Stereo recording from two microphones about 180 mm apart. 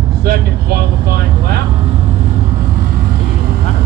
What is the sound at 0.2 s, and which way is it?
Vehicle, 60° right (ahead or behind).